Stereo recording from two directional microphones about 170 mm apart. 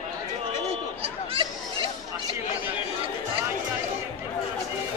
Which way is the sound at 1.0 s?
35° right (ahead or behind).